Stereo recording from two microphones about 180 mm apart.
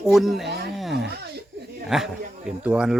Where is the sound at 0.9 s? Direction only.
65° right (ahead or behind).